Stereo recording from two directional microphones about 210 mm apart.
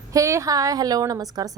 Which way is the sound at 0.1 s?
15° right (ahead or behind).